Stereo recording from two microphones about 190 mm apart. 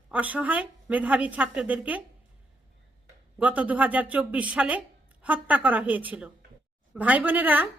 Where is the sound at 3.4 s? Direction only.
10° right (ahead or behind).